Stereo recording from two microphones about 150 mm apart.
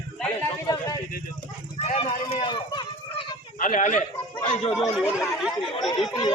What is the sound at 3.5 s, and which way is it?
Speech, 60° left (ahead or behind).